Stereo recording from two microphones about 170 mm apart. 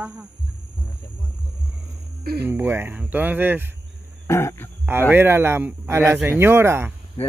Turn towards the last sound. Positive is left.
turn(degrees=-15)  # may be behind; listen again after turning